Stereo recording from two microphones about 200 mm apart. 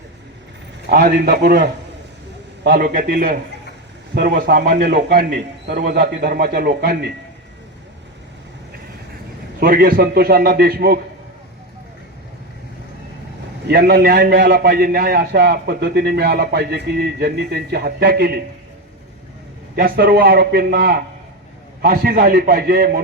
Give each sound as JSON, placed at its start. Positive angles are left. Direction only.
{"t": 0.9, "sound": "a man's voice", "side_deg": -45}
{"t": 4.4, "sound": "a man's voice", "side_deg": -55}
{"t": 9.6, "sound": "a man's voice", "side_deg": -45}
{"t": 13.7, "sound": "a man's voice", "side_deg": -50}
{"t": 19.7, "sound": "a man's voice", "side_deg": -50}